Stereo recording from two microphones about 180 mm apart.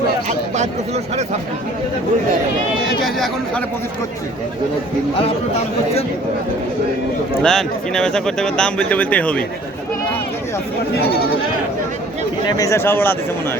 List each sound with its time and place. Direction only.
0.3 s a sound: 40° right (ahead or behind)
3.0 s speech: centre (ahead or behind)
7.4 s speech: 5° left (ahead or behind)
10.9 s speech: 60° left (ahead or behind)
12.5 s speech: 20° left (ahead or behind)